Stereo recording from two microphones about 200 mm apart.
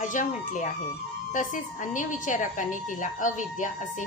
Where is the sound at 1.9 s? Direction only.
40° left (ahead or behind).